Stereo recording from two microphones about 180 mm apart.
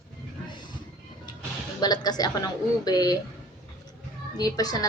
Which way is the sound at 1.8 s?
20° left (ahead or behind).